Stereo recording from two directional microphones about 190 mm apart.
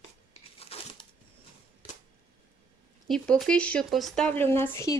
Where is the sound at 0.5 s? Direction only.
30° left (ahead or behind).